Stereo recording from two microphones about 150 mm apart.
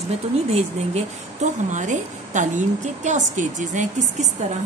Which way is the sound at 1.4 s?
50° right (ahead or behind).